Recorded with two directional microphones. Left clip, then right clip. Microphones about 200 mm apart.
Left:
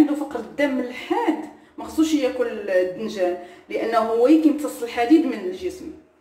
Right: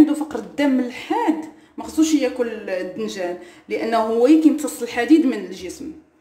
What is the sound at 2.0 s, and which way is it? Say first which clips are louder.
A woman's voice: right 2 dB; 55° right (ahead or behind).